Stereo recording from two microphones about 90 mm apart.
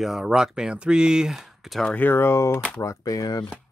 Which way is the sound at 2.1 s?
25° left (ahead or behind).